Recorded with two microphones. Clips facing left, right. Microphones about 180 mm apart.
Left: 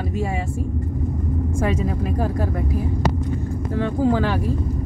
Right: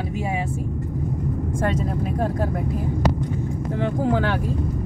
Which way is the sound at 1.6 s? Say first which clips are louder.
Left 1 dB; centre (ahead or behind).